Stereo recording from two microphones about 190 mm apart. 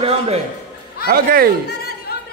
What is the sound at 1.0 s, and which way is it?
Speech, 50° right (ahead or behind).